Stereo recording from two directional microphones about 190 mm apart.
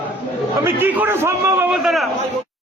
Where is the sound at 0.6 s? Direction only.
10° right (ahead or behind).